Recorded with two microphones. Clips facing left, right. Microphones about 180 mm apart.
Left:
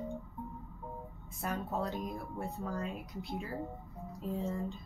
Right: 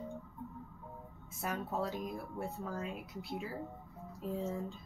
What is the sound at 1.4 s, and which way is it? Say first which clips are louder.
Speech: left 1 dB; 5° right (ahead or behind).